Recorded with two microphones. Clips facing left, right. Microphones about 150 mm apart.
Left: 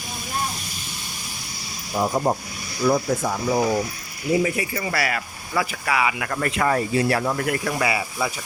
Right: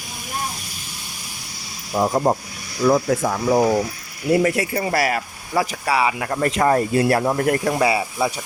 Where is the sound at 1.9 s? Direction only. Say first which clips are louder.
Right 3 dB; 60° right (ahead or behind).